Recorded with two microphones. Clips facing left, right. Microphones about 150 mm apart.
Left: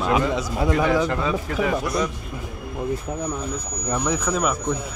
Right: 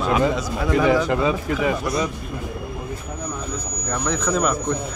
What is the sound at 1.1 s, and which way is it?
Speech, 5° right (ahead or behind).